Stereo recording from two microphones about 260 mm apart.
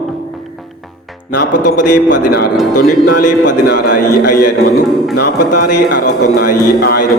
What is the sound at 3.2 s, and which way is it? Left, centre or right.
Speech, left.